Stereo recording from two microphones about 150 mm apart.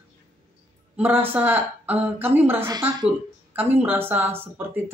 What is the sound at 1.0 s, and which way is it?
Speech, 15° right (ahead or behind).